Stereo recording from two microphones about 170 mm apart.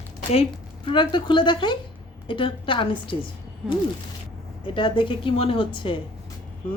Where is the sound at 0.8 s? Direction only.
30° left (ahead or behind).